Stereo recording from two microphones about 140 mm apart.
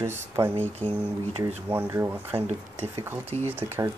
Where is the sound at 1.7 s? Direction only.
15° right (ahead or behind).